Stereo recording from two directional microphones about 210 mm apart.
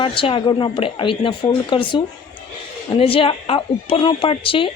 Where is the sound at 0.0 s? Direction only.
25° left (ahead or behind).